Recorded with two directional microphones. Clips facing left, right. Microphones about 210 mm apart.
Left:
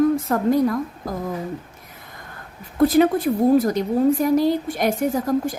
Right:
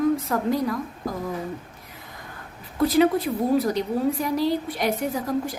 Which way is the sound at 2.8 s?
50° left (ahead or behind).